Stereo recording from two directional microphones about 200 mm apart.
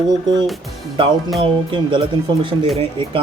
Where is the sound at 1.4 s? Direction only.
25° right (ahead or behind).